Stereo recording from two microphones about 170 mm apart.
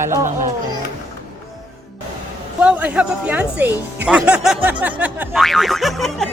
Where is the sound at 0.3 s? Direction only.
45° right (ahead or behind).